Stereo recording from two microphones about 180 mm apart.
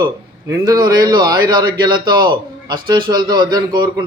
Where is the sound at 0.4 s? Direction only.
20° right (ahead or behind).